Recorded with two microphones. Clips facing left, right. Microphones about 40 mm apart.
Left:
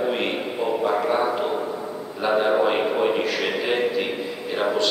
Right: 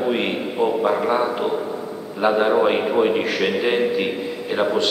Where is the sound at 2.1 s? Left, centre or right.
Centre.